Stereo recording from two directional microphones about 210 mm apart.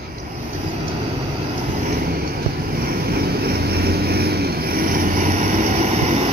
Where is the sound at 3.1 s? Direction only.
50° right (ahead or behind).